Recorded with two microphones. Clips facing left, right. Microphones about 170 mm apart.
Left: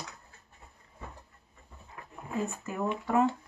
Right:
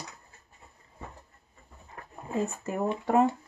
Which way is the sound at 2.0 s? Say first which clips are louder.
Right 2 dB; 45° right (ahead or behind).